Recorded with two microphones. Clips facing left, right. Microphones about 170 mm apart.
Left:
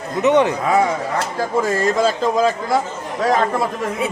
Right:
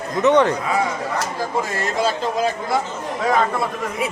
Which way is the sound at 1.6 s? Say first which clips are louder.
Left 5 dB; 45° left (ahead or behind).